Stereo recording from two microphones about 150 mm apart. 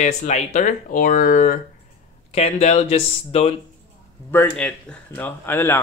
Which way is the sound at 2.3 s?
45° left (ahead or behind).